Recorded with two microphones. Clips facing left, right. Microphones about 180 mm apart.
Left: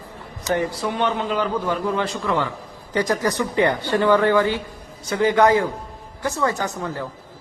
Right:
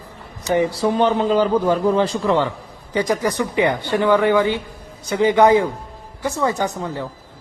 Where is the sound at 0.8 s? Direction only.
35° right (ahead or behind).